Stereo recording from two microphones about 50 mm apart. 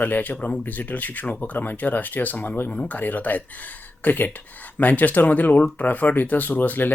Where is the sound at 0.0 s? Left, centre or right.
Left.